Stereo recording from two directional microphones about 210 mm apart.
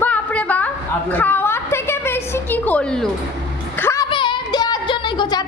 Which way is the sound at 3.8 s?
10° left (ahead or behind).